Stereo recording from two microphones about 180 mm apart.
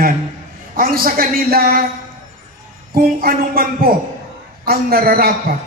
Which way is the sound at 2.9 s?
55° right (ahead or behind).